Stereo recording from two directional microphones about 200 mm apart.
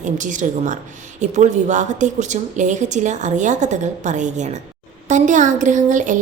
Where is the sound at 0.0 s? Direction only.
40° right (ahead or behind).